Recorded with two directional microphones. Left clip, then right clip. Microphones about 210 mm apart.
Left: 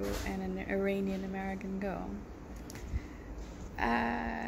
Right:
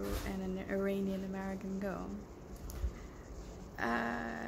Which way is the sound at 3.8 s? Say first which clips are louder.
Left 4 dB; 15° right (ahead or behind).